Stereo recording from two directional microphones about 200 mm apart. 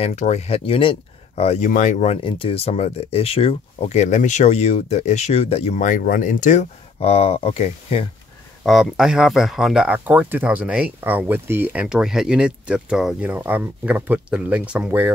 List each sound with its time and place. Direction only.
0.0 s speech: 35° left (ahead or behind)
8.6 s speech: centre (ahead or behind)